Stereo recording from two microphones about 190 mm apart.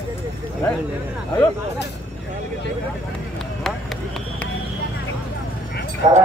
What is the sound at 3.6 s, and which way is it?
Vehicle, centre (ahead or behind).